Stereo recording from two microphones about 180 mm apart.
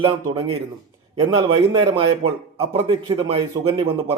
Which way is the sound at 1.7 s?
25° right (ahead or behind).